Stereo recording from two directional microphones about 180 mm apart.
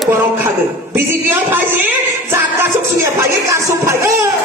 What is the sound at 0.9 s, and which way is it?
Speech, 10° right (ahead or behind).